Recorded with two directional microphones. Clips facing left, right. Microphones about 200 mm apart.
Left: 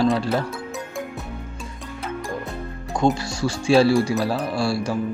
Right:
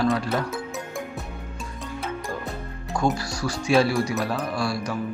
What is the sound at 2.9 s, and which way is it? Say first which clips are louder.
Speech: left 3 dB; 25° left (ahead or behind).